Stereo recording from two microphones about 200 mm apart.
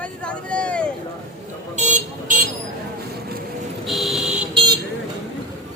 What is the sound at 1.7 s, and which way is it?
Vehicle, 40° right (ahead or behind).